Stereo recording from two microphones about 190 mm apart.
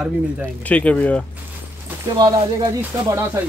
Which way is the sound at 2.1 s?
25° right (ahead or behind).